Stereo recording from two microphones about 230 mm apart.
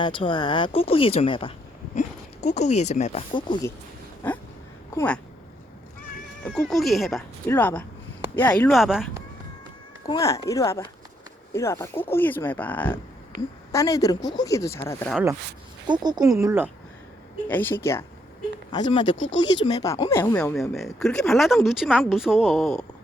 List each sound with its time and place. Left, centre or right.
0.0 s speech: left
4.2 s speech: centre
6.4 s speech: centre
10.1 s speech: centre
15.1 s speech: centre
17.5 s speech: centre
18.9 s speech: left
19.1 s speech: left
19.6 s speech: centre